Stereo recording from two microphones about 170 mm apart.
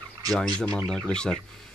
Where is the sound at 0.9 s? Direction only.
5° left (ahead or behind).